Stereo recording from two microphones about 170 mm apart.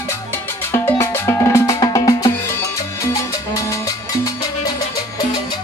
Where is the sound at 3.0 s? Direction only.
20° left (ahead or behind).